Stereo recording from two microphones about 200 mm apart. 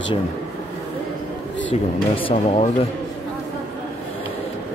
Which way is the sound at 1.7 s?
30° left (ahead or behind).